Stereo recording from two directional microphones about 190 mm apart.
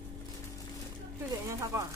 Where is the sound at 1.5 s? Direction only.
15° right (ahead or behind).